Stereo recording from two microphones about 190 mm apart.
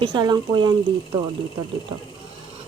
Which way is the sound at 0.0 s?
25° right (ahead or behind).